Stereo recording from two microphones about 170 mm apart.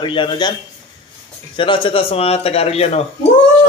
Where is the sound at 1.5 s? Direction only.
30° left (ahead or behind).